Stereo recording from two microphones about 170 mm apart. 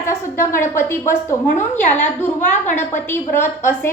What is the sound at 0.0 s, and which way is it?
A woman's voice, 15° left (ahead or behind).